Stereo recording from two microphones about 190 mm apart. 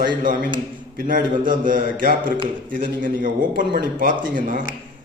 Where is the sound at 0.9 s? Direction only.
50° right (ahead or behind).